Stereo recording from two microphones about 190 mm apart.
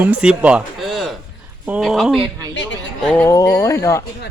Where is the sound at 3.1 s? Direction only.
10° left (ahead or behind).